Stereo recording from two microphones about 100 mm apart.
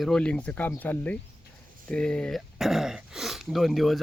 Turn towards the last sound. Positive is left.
turn(degrees=0)  # may be behind; listen again after turning